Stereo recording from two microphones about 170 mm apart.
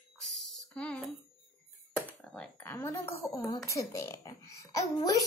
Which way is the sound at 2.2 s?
5° left (ahead or behind).